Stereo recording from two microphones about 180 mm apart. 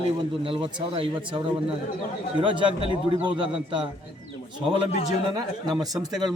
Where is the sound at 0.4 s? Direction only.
30° right (ahead or behind).